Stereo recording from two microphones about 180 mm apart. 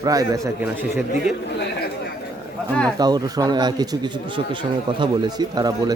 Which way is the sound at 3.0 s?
20° right (ahead or behind).